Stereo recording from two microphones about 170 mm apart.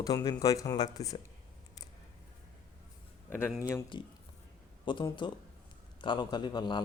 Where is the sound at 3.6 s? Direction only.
25° left (ahead or behind).